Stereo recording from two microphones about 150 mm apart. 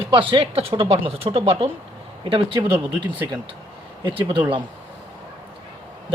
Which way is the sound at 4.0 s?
35° right (ahead or behind).